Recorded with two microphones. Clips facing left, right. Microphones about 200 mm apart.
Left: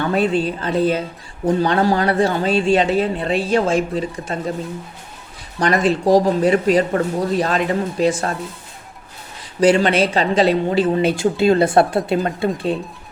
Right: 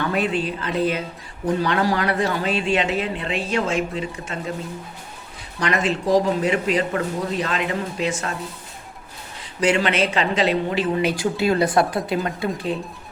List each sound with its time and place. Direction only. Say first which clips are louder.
0.0 s speech: left 5 dB; 30° left (ahead or behind)
5.5 s speech: left 5 dB; 35° left (ahead or behind)
9.6 s speech: left 5 dB; 35° left (ahead or behind)